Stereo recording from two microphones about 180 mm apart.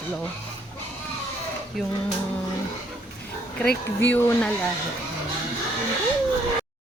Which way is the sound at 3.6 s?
60° left (ahead or behind).